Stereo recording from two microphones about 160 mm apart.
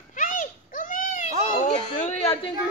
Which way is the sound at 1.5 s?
45° left (ahead or behind).